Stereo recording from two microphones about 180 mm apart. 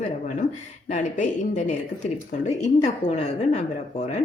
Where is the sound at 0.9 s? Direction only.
40° left (ahead or behind).